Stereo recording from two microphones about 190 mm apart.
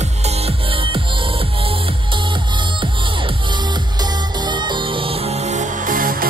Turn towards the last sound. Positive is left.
turn(degrees=-50)  # may be behind; listen again after turning